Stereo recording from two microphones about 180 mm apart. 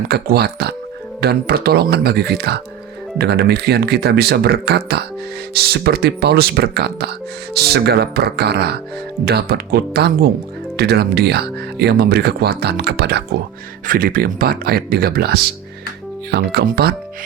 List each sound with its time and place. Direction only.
0.1 s speech: 60° right (ahead or behind)
13.8 s speech: 50° right (ahead or behind)